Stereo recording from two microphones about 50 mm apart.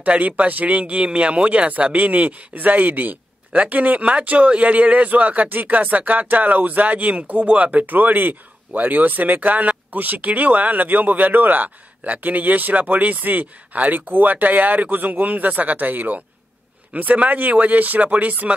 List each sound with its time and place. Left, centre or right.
0.0 s speech: right